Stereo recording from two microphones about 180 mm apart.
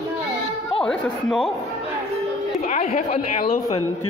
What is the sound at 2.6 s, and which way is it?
A woman's voice, 40° left (ahead or behind).